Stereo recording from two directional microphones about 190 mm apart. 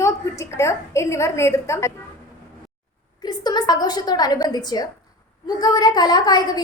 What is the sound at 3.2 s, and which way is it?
A woman's voice, 20° left (ahead or behind).